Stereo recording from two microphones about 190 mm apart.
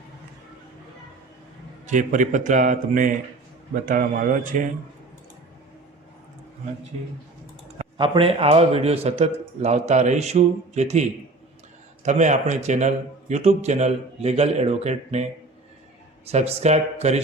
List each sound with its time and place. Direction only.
1.9 s a man's voice: 40° right (ahead or behind)
7.8 s a man's voice: 25° right (ahead or behind)
12.0 s a man's voice: 35° right (ahead or behind)